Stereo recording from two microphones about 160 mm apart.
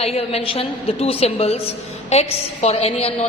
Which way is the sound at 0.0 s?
40° left (ahead or behind).